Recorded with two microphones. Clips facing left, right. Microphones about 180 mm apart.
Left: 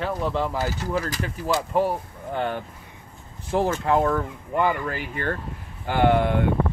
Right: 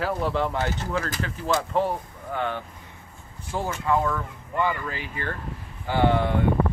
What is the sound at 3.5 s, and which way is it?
Speech, 60° left (ahead or behind).